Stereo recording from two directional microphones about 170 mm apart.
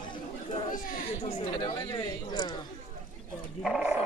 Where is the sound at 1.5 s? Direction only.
25° left (ahead or behind).